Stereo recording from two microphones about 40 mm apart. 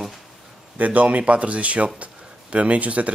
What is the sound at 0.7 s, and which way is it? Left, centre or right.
Speech, right.